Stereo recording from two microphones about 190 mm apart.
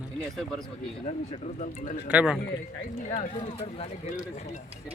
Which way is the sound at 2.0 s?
5° right (ahead or behind).